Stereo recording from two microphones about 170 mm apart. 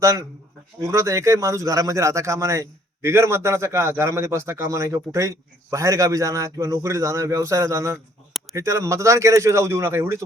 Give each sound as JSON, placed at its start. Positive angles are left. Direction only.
{"t": 0.8, "sound": "a man's voice", "side_deg": -15}